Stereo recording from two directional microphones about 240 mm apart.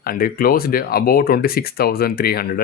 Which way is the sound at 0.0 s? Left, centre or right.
Left.